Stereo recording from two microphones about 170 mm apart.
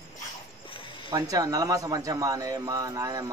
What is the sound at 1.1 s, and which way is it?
A man's voice, 20° right (ahead or behind).